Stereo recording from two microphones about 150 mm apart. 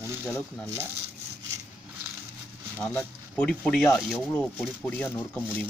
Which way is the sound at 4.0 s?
5° right (ahead or behind).